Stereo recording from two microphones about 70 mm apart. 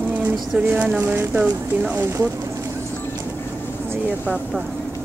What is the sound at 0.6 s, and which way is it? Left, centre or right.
Speech, centre.